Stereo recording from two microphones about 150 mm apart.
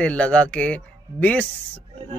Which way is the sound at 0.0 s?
10° left (ahead or behind).